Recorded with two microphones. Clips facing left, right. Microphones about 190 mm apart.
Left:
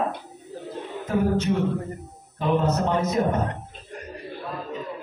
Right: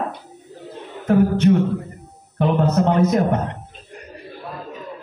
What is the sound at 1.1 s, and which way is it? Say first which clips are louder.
Speech: right 7 dB; 60° right (ahead or behind).